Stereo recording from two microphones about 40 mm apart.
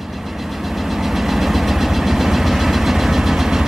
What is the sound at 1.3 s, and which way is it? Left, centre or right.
Vehicle, centre.